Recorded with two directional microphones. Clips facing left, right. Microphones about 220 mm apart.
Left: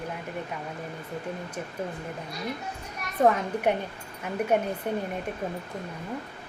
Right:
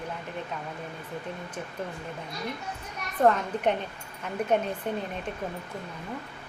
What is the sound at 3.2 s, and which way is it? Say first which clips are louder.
A woman's voice: left 1 dB; 10° left (ahead or behind).